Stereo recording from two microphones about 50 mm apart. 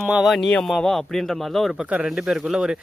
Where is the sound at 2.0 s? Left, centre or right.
Centre.